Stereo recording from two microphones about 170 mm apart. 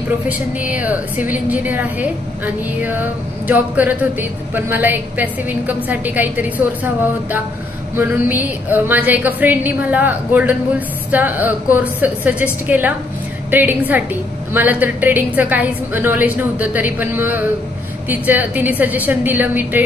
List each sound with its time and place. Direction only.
0.3 s a woman's voice: 10° right (ahead or behind)